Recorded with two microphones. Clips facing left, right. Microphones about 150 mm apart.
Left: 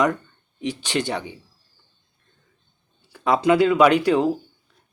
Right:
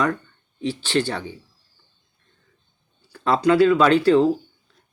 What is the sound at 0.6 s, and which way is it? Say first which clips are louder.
Speech: right 3 dB; 15° left (ahead or behind).